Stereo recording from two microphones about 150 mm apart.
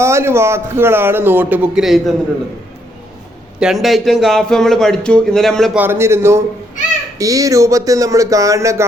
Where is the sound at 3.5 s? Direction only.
5° right (ahead or behind).